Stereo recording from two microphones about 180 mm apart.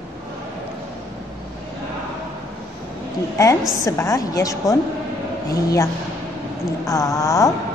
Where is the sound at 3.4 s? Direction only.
20° left (ahead or behind).